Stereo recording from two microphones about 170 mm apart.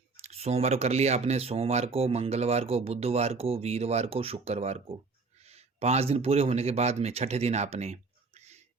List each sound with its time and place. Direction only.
0.2 s speech: 40° right (ahead or behind)